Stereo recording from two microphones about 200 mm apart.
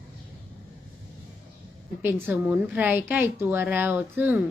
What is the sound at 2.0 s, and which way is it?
A woman's voice, 10° right (ahead or behind).